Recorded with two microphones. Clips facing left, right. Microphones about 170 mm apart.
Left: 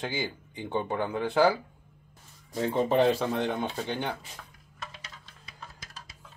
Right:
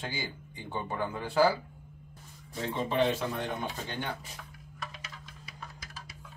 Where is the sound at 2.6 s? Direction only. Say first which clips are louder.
Left 5 dB; 45° left (ahead or behind).